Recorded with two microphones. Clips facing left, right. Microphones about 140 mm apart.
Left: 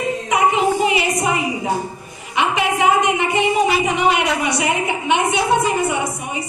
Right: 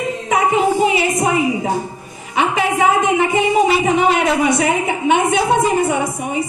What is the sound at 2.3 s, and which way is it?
A woman's voice, 40° right (ahead or behind).